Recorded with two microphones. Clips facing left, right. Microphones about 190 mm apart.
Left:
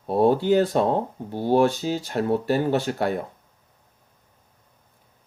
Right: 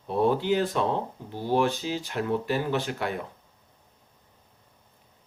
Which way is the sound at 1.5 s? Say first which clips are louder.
Left 5 dB; 40° left (ahead or behind).